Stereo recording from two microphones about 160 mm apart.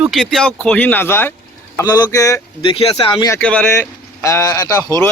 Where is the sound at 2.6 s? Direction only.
35° left (ahead or behind).